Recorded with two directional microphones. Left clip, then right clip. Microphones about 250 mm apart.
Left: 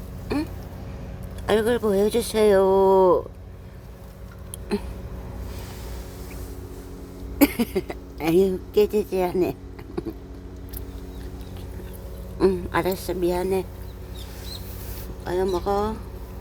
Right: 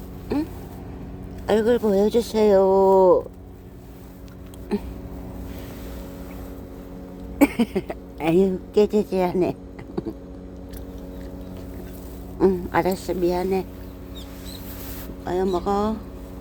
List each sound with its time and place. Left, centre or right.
0.3 s a sound: centre
1.5 s speech: centre
4.7 s speech: centre
7.3 s a woman's voice: centre
12.4 s a woman's voice: centre
15.3 s speech: centre